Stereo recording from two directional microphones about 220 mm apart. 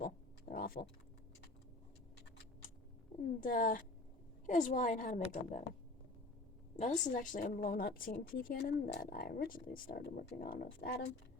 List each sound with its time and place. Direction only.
0.0 s a sound: 40° left (ahead or behind)
3.4 s a woman's voice: 40° left (ahead or behind)
6.7 s a woman's voice: 35° left (ahead or behind)